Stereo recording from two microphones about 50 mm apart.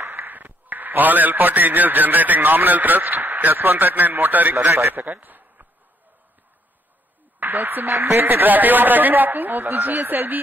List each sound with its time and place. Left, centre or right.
0.0 s a man's voice: right
4.6 s a man's voice: right
4.9 s a sound: right
7.3 s a man's voice: right